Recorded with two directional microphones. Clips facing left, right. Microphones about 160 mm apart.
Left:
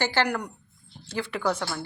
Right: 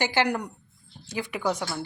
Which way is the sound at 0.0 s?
15° right (ahead or behind).